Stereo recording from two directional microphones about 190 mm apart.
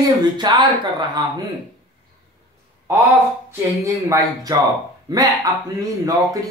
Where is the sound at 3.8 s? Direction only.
15° right (ahead or behind).